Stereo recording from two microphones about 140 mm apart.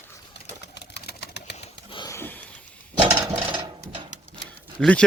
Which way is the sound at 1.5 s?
40° left (ahead or behind).